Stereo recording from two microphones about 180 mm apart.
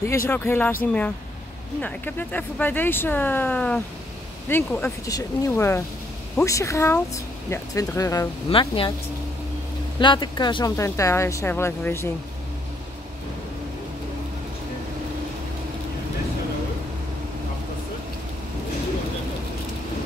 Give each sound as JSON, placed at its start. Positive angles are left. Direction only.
{"t": 0.3, "sound": "speech", "side_deg": 10}
{"t": 1.8, "sound": "speech", "side_deg": 10}
{"t": 8.5, "sound": "speech", "side_deg": 30}
{"t": 9.9, "sound": "speech", "side_deg": 25}